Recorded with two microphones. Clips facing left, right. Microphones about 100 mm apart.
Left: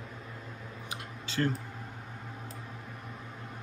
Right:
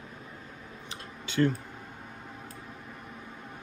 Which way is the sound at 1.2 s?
35° left (ahead or behind).